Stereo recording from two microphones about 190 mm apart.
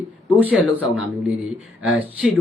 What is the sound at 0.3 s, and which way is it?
Speech, 5° right (ahead or behind).